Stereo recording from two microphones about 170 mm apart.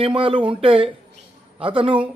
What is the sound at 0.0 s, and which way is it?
A man's voice, 30° right (ahead or behind).